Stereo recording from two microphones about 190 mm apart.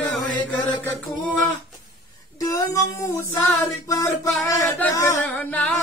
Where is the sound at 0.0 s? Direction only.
5° left (ahead or behind).